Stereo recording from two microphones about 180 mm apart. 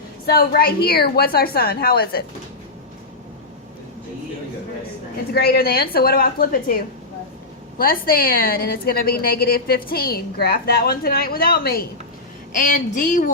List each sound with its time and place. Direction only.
0.3 s a woman's voice: 55° left (ahead or behind)
5.3 s a woman's voice: 60° left (ahead or behind)
12.5 s speech: 45° left (ahead or behind)